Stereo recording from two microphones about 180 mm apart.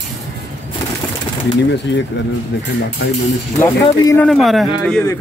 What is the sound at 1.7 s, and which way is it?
Speech, 75° left (ahead or behind).